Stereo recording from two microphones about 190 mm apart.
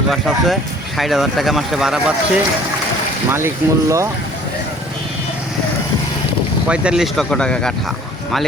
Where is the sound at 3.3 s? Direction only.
15° right (ahead or behind).